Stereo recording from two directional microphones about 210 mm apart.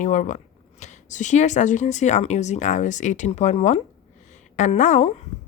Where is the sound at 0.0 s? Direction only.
35° left (ahead or behind).